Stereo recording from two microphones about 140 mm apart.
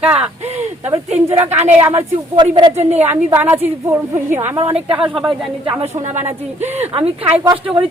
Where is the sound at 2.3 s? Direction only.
35° right (ahead or behind).